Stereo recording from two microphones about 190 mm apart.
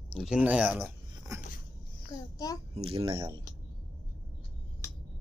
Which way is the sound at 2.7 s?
30° right (ahead or behind).